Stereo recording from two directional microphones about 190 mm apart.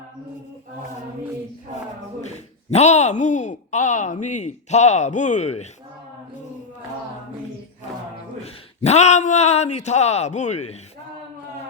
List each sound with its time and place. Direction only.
2.2 s speech: 35° left (ahead or behind)
8.8 s a man's voice: 35° left (ahead or behind)